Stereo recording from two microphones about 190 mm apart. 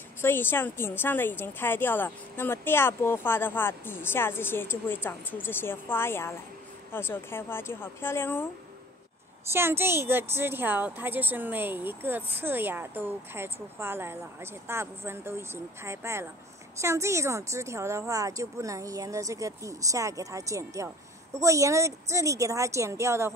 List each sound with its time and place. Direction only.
0.2 s speech: 10° left (ahead or behind)
9.5 s a woman's voice: 10° right (ahead or behind)